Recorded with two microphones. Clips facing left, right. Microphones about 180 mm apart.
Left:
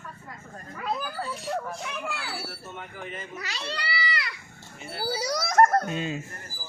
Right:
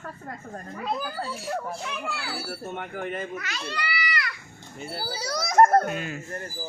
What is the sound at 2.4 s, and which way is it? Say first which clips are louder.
Speech: right 7 dB; 55° right (ahead or behind).